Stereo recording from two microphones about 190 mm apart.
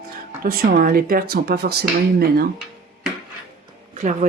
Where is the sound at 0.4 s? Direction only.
50° right (ahead or behind).